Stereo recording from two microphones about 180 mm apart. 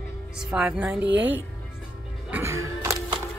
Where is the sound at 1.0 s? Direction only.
85° right.